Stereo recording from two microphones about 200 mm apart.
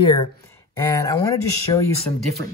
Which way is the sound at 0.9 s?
15° left (ahead or behind).